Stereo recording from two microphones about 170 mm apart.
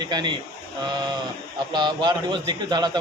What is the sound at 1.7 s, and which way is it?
A man's voice, 25° right (ahead or behind).